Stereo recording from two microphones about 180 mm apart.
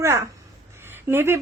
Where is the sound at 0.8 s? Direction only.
10° right (ahead or behind).